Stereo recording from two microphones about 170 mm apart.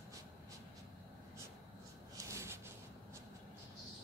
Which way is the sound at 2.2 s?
15° right (ahead or behind).